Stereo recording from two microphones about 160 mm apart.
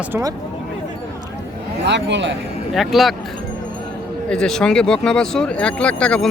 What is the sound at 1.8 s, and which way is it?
Speech, 90° right.